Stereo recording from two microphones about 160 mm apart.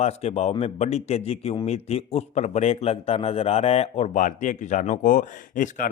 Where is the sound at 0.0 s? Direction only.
40° left (ahead or behind).